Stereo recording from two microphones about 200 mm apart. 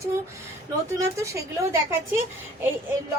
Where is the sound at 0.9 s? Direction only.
15° right (ahead or behind).